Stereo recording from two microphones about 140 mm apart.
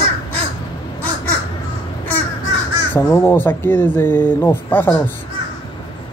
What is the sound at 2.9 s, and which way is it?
Speech, 15° left (ahead or behind).